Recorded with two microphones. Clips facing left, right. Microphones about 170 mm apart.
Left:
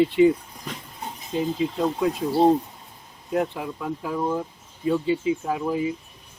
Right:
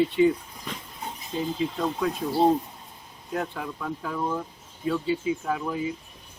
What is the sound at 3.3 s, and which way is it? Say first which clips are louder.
Speech: left 5 dB; 20° left (ahead or behind).